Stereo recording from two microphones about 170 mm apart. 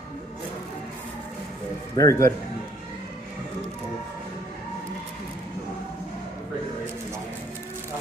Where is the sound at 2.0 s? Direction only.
15° left (ahead or behind).